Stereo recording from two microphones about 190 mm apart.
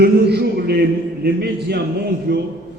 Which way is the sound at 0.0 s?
60° right (ahead or behind).